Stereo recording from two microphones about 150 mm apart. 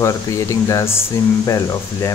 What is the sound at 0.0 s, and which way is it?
Speech, 20° left (ahead or behind).